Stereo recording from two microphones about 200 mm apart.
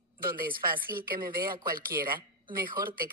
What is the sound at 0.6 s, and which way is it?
Speech, 45° right (ahead or behind).